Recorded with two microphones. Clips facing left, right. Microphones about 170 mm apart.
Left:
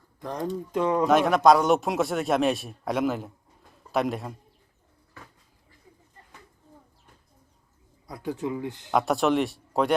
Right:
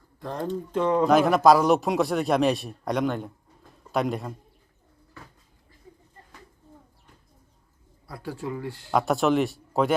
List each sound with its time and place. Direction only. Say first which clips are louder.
0.2 s a man's voice: even; 15° left (ahead or behind); by 4.4 s centre (ahead or behind)
8.0 s speech: left 3 dB; 20° left (ahead or behind)
8.9 s a man's voice: right 1 dB; centre (ahead or behind)